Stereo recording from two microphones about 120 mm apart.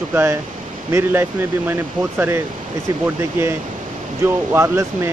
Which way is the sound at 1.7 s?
20° right (ahead or behind).